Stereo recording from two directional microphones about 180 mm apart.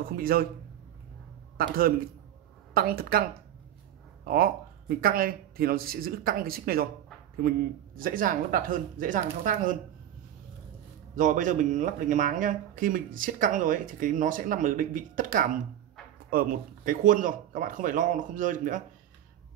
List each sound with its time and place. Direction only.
0.2 s speech: 55° right (ahead or behind)
1.6 s speech: 55° right (ahead or behind)
11.1 s speech: 45° right (ahead or behind)